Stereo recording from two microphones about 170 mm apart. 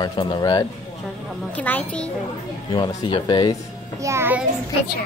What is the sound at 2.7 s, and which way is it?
Speech, 30° left (ahead or behind).